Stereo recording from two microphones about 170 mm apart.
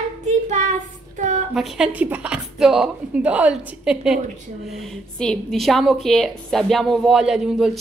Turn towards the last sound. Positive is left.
turn(degrees=-5)  # may be behind; listen again after turning